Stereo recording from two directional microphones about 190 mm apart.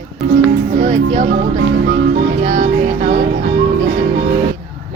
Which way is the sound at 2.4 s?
45° right (ahead or behind).